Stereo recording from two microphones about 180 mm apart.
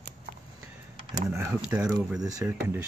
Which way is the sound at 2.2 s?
20° right (ahead or behind).